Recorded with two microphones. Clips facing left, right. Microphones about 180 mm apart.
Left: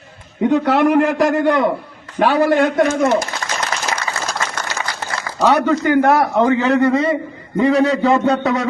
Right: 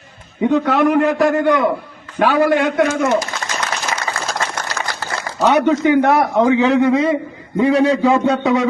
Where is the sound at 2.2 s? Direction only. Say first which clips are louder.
Even; 40° left (ahead or behind).